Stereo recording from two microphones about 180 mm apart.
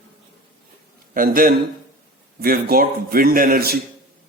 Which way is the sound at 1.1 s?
50° right (ahead or behind).